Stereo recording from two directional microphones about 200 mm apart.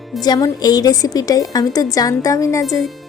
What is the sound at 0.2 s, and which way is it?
Speech, 20° left (ahead or behind).